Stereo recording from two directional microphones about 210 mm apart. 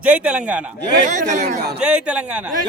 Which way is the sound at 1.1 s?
35° right (ahead or behind).